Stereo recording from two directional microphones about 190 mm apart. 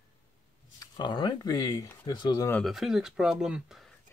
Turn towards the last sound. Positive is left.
turn(degrees=-5)  # may be behind; listen again after turning